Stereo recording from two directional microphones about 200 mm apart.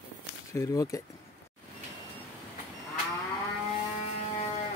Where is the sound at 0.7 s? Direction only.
15° left (ahead or behind).